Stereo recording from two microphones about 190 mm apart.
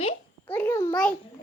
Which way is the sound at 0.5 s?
15° left (ahead or behind).